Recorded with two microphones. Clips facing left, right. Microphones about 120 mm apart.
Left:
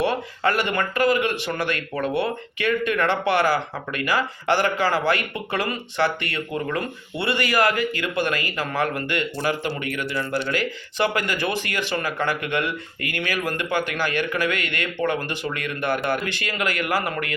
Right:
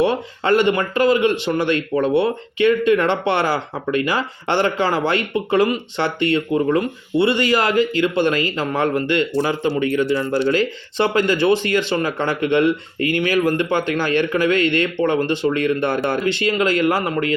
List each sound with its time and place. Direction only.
0.0 s a man's voice: 25° right (ahead or behind)